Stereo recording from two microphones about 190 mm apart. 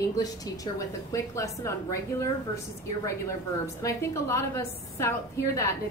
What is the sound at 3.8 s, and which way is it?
A woman's voice, 15° left (ahead or behind).